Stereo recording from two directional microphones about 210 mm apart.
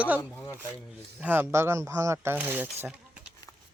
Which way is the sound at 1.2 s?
10° right (ahead or behind).